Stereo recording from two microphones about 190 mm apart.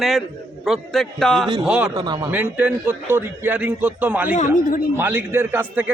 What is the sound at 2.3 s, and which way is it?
A man's voice, 10° right (ahead or behind).